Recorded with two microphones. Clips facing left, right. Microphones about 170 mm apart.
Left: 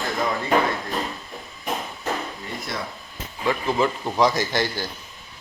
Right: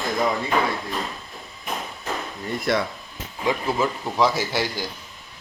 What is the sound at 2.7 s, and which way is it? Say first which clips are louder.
Speech: right 10 dB; 70° right (ahead or behind).